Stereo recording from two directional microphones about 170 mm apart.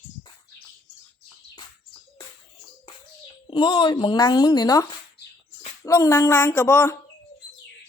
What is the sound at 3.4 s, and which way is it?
Speech, 30° left (ahead or behind).